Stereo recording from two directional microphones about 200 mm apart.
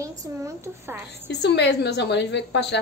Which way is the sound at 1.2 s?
60° left (ahead or behind).